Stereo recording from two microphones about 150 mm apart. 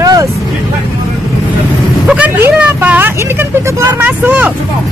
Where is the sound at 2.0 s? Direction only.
10° right (ahead or behind).